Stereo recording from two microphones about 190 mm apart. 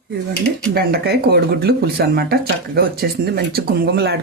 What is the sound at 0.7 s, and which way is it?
Speech, 55° right (ahead or behind).